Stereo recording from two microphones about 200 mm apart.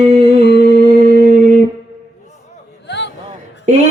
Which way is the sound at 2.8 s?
60° left (ahead or behind).